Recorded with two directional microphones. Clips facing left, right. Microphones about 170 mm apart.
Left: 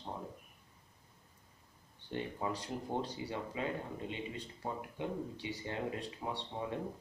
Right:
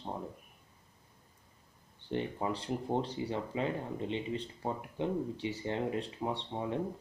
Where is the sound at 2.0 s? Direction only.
25° right (ahead or behind).